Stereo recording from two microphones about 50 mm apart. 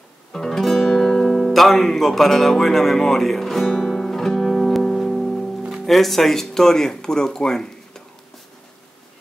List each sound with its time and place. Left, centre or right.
0.3 s speech: centre
3.8 s music: centre
5.6 s music: right
5.9 s speech: centre